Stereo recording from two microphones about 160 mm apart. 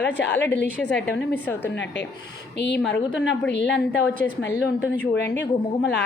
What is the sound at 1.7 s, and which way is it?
A woman's voice, 90° left.